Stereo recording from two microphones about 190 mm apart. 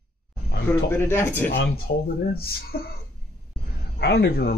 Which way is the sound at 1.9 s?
55° left (ahead or behind).